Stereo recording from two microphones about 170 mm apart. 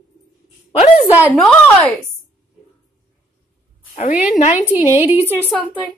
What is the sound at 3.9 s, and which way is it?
Speech, 45° left (ahead or behind).